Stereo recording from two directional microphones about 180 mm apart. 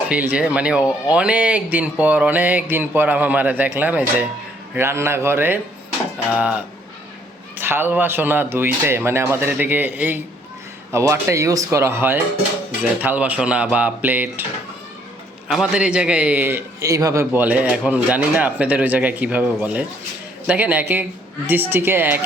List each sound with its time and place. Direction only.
0.1 s a man's voice: 5° right (ahead or behind)
7.6 s a man's voice: 10° right (ahead or behind)
15.4 s a man's voice: 5° right (ahead or behind)